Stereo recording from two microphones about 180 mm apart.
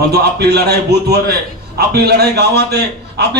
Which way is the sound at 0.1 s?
65° right (ahead or behind).